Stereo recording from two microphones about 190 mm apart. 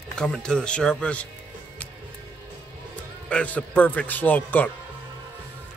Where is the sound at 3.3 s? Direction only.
5° left (ahead or behind).